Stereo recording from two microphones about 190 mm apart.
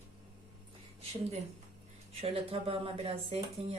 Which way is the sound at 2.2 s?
30° right (ahead or behind).